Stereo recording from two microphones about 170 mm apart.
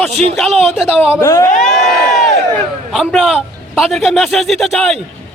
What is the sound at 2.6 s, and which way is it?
A man's voice, centre (ahead or behind).